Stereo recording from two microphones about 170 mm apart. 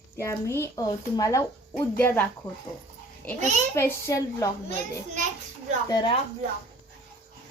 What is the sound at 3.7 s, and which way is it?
Speech, 15° left (ahead or behind).